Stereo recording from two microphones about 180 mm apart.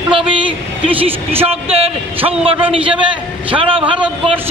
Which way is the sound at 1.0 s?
35° right (ahead or behind).